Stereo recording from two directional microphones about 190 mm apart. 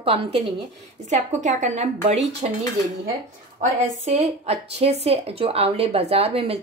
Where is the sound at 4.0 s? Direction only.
35° right (ahead or behind).